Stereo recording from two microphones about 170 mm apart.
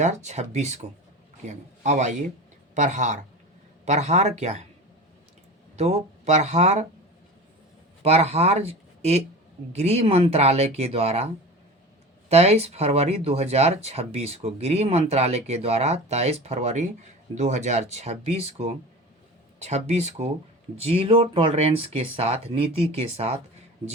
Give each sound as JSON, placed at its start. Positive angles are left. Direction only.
{"t": 0.0, "sound": "speech", "side_deg": -45}
{"t": 5.7, "sound": "speech", "side_deg": -40}
{"t": 8.0, "sound": "speech", "side_deg": -35}
{"t": 12.3, "sound": "speech", "side_deg": -40}